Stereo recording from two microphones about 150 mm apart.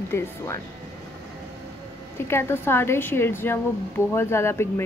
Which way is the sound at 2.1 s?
15° left (ahead or behind).